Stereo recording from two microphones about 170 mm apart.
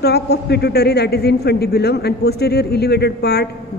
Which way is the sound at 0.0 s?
70° left (ahead or behind).